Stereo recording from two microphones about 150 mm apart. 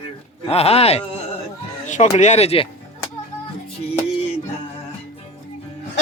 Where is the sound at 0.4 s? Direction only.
45° left (ahead or behind).